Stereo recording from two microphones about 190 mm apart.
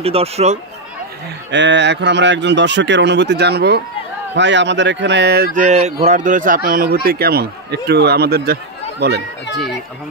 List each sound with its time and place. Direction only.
0.0 s speech: 30° right (ahead or behind)
1.5 s speech: 70° right (ahead or behind)